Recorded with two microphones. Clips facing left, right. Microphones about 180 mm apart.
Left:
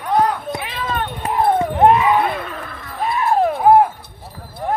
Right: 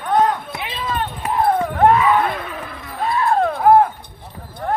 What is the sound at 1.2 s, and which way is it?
Wind chime, 20° left (ahead or behind).